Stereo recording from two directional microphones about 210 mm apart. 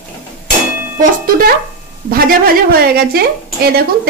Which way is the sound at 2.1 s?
45° right (ahead or behind).